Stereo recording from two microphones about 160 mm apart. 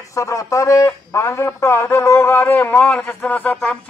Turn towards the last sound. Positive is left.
turn(degrees=10)  # may be behind; listen again after turning